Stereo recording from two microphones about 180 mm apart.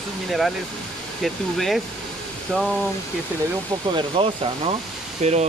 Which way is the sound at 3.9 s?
30° right (ahead or behind).